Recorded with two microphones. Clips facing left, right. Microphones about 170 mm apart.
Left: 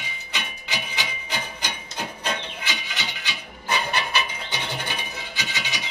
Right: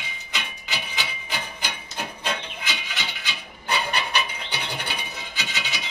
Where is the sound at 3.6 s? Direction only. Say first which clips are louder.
Even; 15° right (ahead or behind).